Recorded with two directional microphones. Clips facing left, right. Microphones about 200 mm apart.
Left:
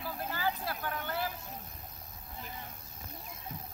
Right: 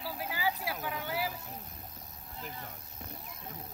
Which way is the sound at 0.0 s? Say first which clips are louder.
Even; 10° right (ahead or behind).